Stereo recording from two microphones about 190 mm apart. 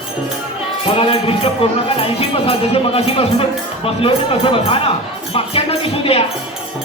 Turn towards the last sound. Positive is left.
turn(degrees=30)  # may be behind; listen again after turning